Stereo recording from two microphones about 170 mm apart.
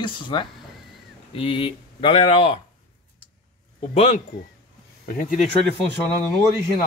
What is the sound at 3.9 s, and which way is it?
Speech, 40° left (ahead or behind).